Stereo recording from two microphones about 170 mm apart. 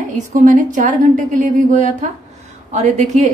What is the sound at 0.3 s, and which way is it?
A woman's voice, 50° right (ahead or behind).